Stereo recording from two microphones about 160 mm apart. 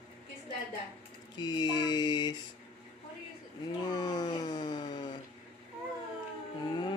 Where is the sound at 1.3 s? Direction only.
25° left (ahead or behind).